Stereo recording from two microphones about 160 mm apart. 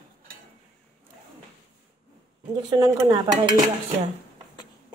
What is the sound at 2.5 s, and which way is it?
Speech, 25° right (ahead or behind).